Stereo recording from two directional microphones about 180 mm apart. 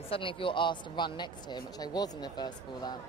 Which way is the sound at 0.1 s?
30° left (ahead or behind).